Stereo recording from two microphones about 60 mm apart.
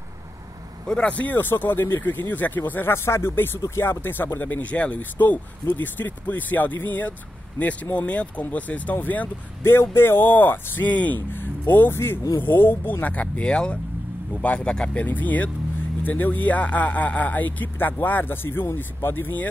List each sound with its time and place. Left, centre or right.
0.8 s speech: centre; by 2.9 s left
2.9 s speech: left
9.6 s speech: left
13.0 s speech: left
15.0 s speech: left